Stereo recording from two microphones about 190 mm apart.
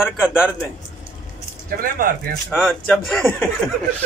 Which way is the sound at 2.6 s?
Centre (ahead or behind).